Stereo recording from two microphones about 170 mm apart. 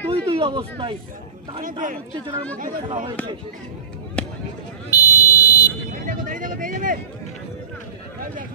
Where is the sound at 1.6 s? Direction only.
50° right (ahead or behind).